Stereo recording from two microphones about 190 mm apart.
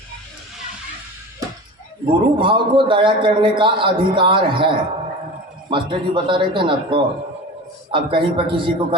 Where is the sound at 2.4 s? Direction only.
25° right (ahead or behind).